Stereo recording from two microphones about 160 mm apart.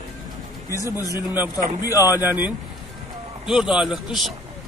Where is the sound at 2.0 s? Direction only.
10° right (ahead or behind).